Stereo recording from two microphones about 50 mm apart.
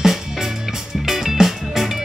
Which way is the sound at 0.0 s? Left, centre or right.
Centre.